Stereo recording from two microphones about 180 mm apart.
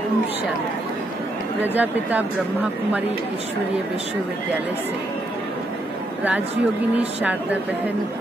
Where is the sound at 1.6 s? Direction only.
10° right (ahead or behind).